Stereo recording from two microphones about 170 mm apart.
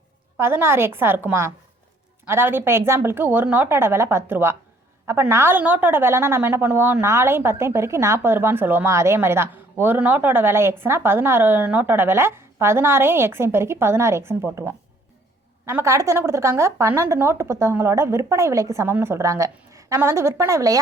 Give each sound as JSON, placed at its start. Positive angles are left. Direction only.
{"t": 0.3, "sound": "a woman's voice", "side_deg": -15}